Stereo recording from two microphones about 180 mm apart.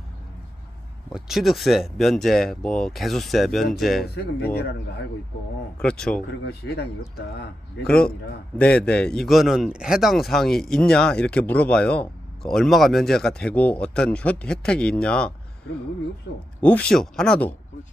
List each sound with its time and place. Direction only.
1.1 s a man's voice: centre (ahead or behind)
5.8 s a man's voice: 5° left (ahead or behind)
6.4 s speech: 65° left (ahead or behind)
8.5 s a man's voice: 5° left (ahead or behind)
16.3 s speech: 65° left (ahead or behind)
16.6 s a man's voice: 5° left (ahead or behind)